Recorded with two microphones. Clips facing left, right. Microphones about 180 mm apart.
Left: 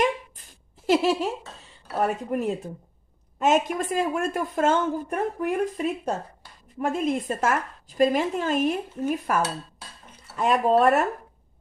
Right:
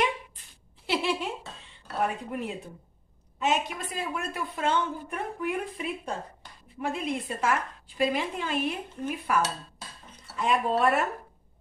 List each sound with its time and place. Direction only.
0.8 s a woman's voice: 45° left (ahead or behind)